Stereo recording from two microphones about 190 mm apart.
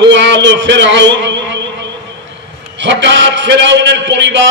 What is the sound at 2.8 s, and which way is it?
A man's voice, 70° right (ahead or behind).